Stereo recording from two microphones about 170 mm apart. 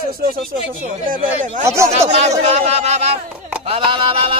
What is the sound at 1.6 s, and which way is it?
Speech, 15° right (ahead or behind).